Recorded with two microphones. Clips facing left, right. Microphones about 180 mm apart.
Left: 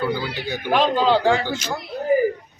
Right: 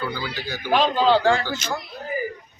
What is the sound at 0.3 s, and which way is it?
A man's voice, 20° left (ahead or behind).